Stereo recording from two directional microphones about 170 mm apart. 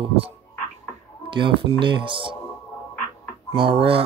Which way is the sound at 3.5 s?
30° right (ahead or behind).